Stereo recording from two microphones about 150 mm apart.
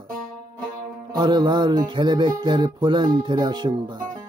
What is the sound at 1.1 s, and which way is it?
Speech, 30° right (ahead or behind).